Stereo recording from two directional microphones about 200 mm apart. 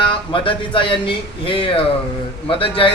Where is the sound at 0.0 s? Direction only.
25° left (ahead or behind).